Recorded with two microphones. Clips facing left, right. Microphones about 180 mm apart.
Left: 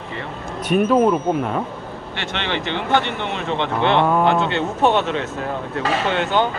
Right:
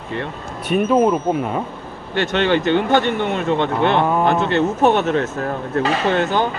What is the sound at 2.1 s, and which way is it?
Speech, 45° right (ahead or behind).